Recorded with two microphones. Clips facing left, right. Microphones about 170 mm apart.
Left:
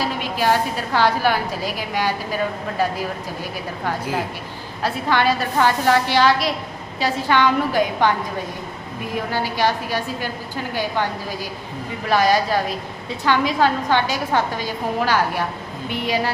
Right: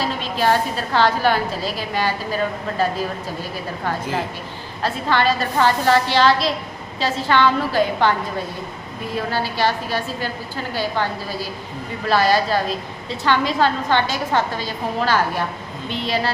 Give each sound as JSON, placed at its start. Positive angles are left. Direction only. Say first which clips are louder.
{"t": 0.0, "sound": "a woman's voice", "louder": "right 1 dB", "side_deg": 10}
{"t": 9.1, "sound": "a woman's voice", "louder": "even", "side_deg": 15}